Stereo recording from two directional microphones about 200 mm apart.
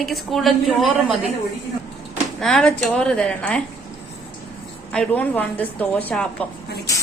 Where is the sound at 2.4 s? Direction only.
5° left (ahead or behind).